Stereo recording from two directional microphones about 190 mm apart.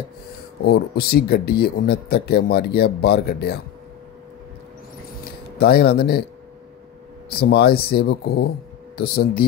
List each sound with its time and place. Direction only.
0.7 s speech: 55° left (ahead or behind)
5.6 s speech: 55° left (ahead or behind)
7.2 s speech: 55° left (ahead or behind)